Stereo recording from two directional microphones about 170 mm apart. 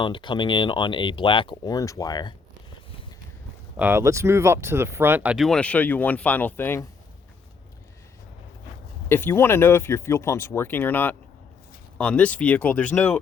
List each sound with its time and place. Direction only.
0.0 s speech: 30° left (ahead or behind)
3.8 s speech: 15° right (ahead or behind); by 6.8 s 10° left (ahead or behind)
9.0 s speech: 15° left (ahead or behind)